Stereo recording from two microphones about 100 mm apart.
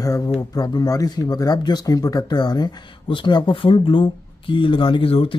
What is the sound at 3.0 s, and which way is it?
Speech, 55° left (ahead or behind).